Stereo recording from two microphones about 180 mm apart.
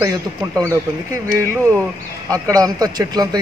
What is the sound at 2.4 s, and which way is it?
Speech, 20° right (ahead or behind).